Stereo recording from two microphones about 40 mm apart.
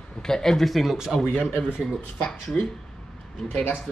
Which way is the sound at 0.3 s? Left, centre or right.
Centre.